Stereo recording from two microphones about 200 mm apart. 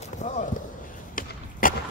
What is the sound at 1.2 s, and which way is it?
Basketball bounce, 45° left (ahead or behind).